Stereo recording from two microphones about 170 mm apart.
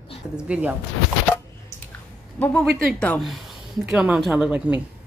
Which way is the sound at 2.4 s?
5° left (ahead or behind).